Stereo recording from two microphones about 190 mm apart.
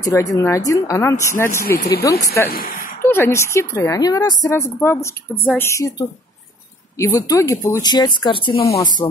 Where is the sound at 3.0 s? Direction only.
10° left (ahead or behind).